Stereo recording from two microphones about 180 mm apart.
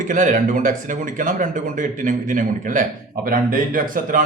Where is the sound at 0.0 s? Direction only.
45° right (ahead or behind).